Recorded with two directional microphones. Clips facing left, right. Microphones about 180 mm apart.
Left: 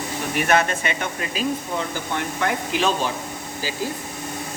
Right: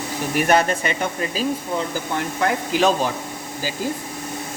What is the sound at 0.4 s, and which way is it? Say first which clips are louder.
Speech: right 2 dB; 35° right (ahead or behind).